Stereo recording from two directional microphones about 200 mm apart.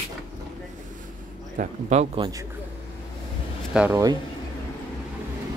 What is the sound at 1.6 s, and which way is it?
Speech, 35° right (ahead or behind).